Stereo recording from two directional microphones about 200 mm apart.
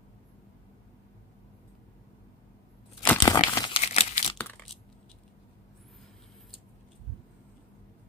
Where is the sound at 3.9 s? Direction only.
30° left (ahead or behind).